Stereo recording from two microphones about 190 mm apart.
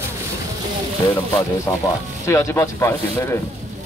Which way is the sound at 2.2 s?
15° left (ahead or behind).